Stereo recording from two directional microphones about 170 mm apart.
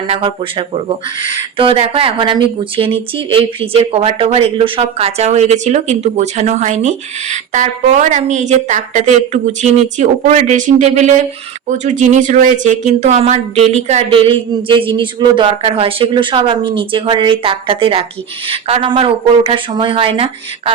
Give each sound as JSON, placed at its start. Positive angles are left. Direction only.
{"t": 0.1, "sound": "speech", "side_deg": -30}